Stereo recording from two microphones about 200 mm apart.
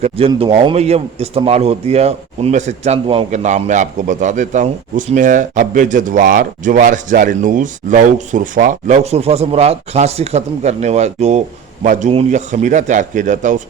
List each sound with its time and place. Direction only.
0.0 s speech: 30° right (ahead or behind)